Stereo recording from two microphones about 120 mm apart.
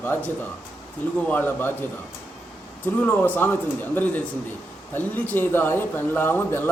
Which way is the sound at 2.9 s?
15° left (ahead or behind).